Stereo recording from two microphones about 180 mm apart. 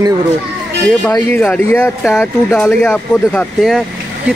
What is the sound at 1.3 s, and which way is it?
Speech, 10° left (ahead or behind).